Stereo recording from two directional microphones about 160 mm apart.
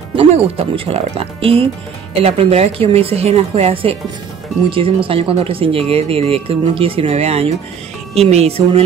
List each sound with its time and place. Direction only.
0.1 s speech: 35° right (ahead or behind)